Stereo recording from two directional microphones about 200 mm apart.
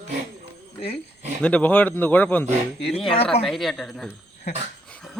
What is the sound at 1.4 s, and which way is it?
A man's voice, 5° left (ahead or behind).